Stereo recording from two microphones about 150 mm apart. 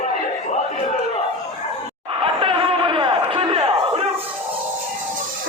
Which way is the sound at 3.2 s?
40° right (ahead or behind).